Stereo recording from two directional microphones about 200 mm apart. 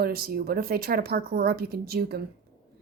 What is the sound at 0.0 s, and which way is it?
Speech, 50° right (ahead or behind).